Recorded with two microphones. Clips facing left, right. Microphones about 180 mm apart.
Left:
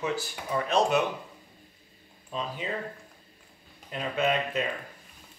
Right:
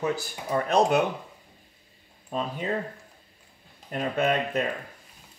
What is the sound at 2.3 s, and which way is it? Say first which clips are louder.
Speech: right 4 dB; 45° right (ahead or behind).